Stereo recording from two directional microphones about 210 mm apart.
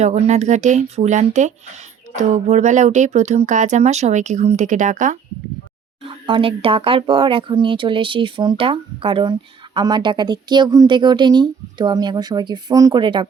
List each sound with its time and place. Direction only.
0.0 s speech: 30° right (ahead or behind)
6.0 s speech: 25° right (ahead or behind)